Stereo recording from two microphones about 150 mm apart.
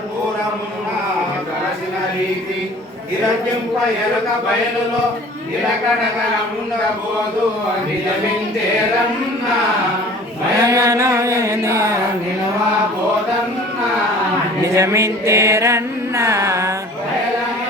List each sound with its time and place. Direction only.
10.6 s music: 20° right (ahead or behind)
14.6 s mantra: 20° right (ahead or behind)